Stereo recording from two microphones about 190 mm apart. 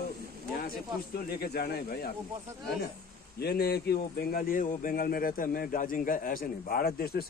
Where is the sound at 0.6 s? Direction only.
50° left (ahead or behind).